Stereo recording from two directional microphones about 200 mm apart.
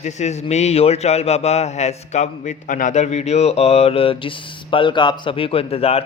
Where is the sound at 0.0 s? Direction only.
35° left (ahead or behind).